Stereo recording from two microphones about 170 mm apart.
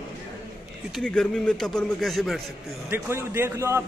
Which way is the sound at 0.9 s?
5° left (ahead or behind).